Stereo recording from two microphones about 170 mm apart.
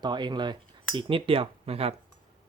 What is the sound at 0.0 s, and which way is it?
Speech, 25° right (ahead or behind).